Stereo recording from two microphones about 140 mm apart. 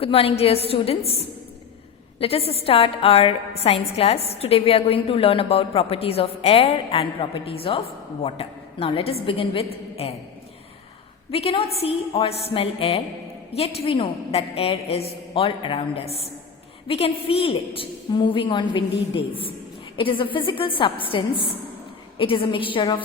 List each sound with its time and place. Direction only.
0.0 s a woman's voice: 45° left (ahead or behind)
11.3 s a woman's voice: 40° left (ahead or behind)